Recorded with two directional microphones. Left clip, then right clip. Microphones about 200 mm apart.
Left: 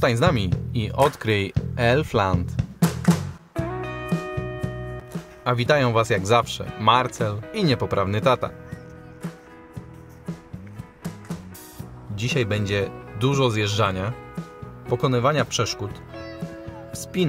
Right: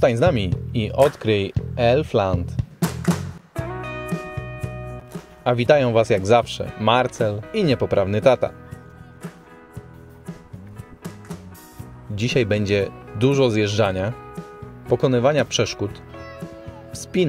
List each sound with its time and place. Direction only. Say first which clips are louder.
0.0 s music: right 3 dB; 10° right (ahead or behind)
5.4 s speech: right 4 dB; 10° right (ahead or behind)
12.2 s speech: right 4 dB; 15° right (ahead or behind)
16.9 s music: right 4 dB; 15° right (ahead or behind)